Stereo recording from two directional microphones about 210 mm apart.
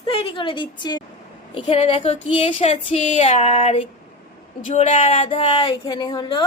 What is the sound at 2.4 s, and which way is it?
Female singing, 30° left (ahead or behind).